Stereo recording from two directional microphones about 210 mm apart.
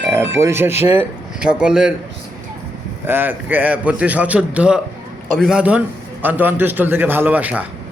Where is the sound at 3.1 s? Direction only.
10° right (ahead or behind).